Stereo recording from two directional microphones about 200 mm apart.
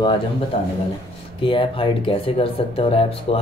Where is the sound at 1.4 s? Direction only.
25° left (ahead or behind).